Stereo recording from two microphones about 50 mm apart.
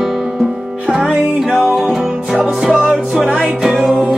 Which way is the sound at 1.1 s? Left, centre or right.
Right.